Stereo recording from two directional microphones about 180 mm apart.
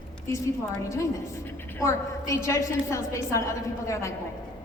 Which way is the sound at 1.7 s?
15° left (ahead or behind).